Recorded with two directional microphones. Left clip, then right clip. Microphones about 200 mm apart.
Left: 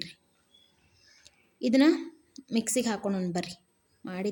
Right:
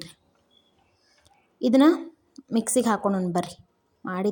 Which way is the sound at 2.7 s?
20° right (ahead or behind).